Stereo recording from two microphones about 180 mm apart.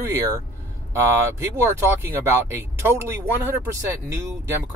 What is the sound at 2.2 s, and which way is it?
Speech, 15° right (ahead or behind).